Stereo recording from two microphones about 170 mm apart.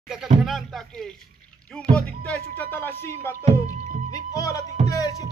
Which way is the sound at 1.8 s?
5° left (ahead or behind).